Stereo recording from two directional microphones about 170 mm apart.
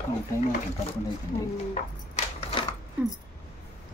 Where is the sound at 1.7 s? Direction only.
35° left (ahead or behind).